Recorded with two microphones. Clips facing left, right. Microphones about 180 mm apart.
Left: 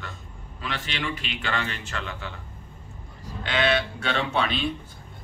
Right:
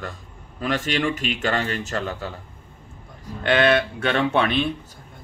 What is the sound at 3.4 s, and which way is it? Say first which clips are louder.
Speech: right 6 dB; 55° right (ahead or behind).